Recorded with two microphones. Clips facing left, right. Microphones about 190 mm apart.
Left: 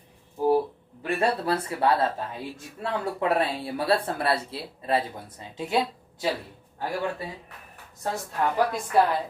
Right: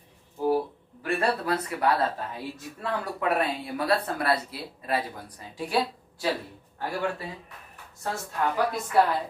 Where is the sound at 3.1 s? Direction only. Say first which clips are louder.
Left 1 dB; 30° left (ahead or behind).